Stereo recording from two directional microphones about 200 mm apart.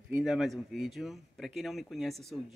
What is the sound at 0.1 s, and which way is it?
Speech, 5° right (ahead or behind).